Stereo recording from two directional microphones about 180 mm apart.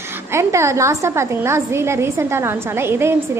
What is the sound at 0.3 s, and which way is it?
A woman's voice, 15° right (ahead or behind).